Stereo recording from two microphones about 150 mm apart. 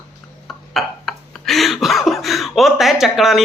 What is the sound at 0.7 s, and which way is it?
Speech, centre (ahead or behind).